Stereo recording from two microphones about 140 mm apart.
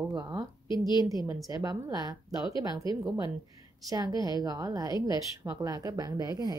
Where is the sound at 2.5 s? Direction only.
35° left (ahead or behind).